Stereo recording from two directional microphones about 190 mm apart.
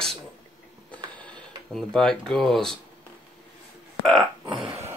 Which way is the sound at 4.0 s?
Centre (ahead or behind).